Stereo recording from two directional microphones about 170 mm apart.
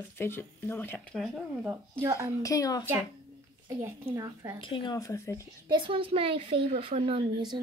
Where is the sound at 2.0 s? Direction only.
20° right (ahead or behind).